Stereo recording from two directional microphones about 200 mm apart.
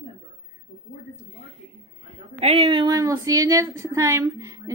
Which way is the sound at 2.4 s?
30° right (ahead or behind).